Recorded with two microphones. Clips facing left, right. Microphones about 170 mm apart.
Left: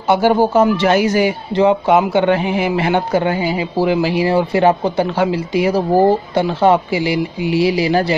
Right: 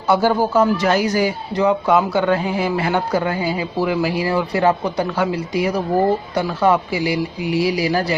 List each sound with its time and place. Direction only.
0.1 s a man's voice: 20° left (ahead or behind)